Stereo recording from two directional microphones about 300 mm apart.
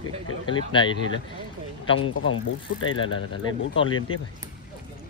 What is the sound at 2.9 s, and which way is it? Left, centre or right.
Speech, centre.